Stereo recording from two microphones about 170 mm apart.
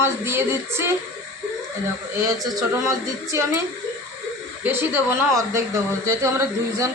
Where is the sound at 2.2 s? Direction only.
20° right (ahead or behind).